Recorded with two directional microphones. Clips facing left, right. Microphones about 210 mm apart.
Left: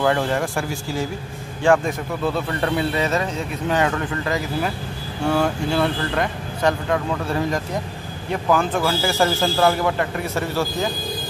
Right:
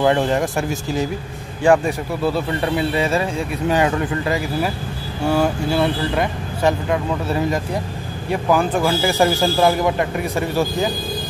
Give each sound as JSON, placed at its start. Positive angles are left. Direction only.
{"t": 0.0, "sound": "speech", "side_deg": -20}